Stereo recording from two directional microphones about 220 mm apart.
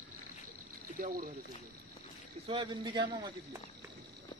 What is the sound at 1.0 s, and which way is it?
Speech, 40° right (ahead or behind).